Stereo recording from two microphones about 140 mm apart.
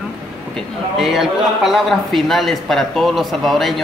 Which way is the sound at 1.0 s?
Centre (ahead or behind).